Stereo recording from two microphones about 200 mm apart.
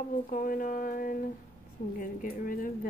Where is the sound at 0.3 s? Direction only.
45° left (ahead or behind).